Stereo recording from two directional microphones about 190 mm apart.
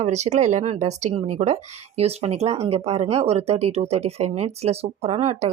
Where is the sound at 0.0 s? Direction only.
35° right (ahead or behind).